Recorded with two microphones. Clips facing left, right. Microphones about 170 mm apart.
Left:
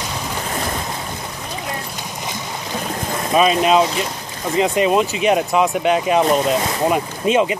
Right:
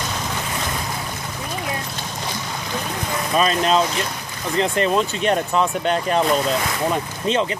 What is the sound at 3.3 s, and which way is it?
Speech, 10° left (ahead or behind).